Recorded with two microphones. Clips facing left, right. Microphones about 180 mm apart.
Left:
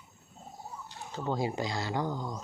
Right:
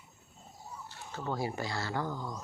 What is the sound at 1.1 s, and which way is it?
Speech, 20° left (ahead or behind).